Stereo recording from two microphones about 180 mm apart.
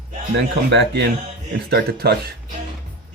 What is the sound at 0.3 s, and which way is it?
Speech, 75° right (ahead or behind).